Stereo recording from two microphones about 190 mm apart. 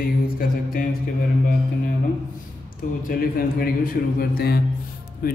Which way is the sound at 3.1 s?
50° left (ahead or behind).